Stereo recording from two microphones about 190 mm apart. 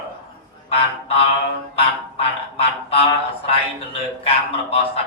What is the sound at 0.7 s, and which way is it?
Music, 30° left (ahead or behind).